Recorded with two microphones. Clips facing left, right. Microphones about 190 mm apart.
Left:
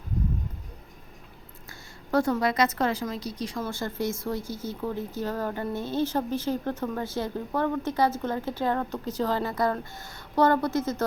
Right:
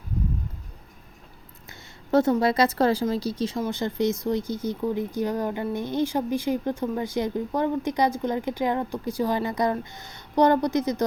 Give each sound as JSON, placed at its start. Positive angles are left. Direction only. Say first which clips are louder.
{"t": 2.0, "sound": "speech", "louder": "right 4 dB", "side_deg": -25}